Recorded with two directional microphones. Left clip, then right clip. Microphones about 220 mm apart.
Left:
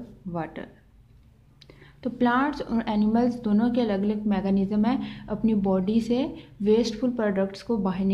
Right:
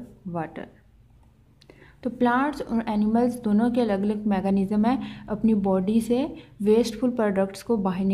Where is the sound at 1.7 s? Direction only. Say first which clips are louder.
Right 1 dB; 10° right (ahead or behind).